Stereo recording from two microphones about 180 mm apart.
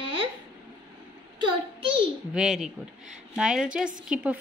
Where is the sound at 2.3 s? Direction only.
5° right (ahead or behind).